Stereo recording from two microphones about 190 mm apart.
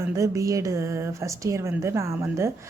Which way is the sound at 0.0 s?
15° right (ahead or behind).